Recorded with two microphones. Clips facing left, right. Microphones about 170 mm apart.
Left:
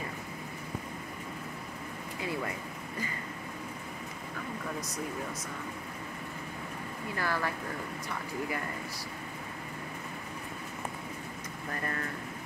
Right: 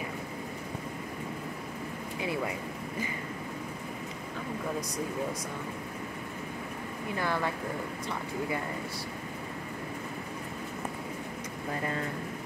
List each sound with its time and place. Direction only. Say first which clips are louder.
2.1 s speech: right 3 dB; 20° right (ahead or behind)
7.1 s speech: right 2 dB; 20° right (ahead or behind)